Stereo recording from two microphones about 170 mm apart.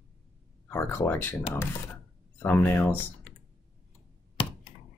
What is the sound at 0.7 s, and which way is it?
Speech, 10° left (ahead or behind).